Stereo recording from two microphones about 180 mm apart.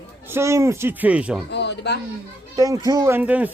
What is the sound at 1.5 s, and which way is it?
Speech, 70° left (ahead or behind).